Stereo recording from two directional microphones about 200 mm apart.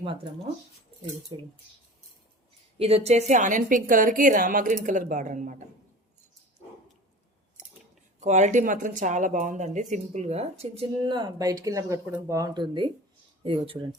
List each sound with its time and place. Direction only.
1.3 s speech: 25° right (ahead or behind)
2.7 s speech: 30° right (ahead or behind)
8.2 s speech: 35° right (ahead or behind)